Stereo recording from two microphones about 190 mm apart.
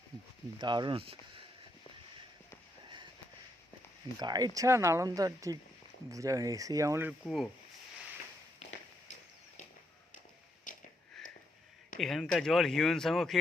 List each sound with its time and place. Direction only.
0.6 s speech: 25° right (ahead or behind)
4.2 s speech: 20° right (ahead or behind); by 7.5 s centre (ahead or behind)
10.7 s a sound: 45° left (ahead or behind)
11.2 s sniff: centre (ahead or behind)
11.9 s speech: centre (ahead or behind)